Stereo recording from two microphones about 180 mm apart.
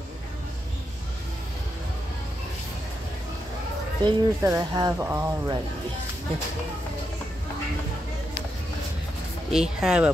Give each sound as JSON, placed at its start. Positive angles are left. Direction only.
{"t": 4.0, "sound": "speech", "side_deg": -15}
{"t": 9.5, "sound": "speech", "side_deg": -5}